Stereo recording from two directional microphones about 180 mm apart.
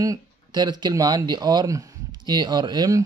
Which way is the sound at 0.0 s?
20° right (ahead or behind).